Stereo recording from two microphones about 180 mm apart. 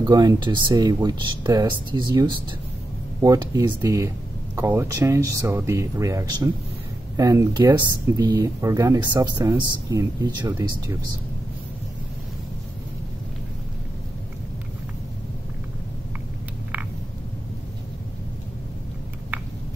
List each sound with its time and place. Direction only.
0.0 s speech: 25° right (ahead or behind)